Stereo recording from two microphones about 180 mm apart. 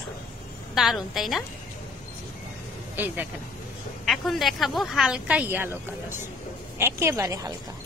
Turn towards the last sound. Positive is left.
turn(degrees=-20)  # may be behind; listen again after turning